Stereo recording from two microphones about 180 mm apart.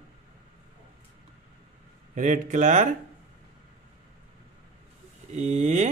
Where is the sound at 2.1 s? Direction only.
45° right (ahead or behind).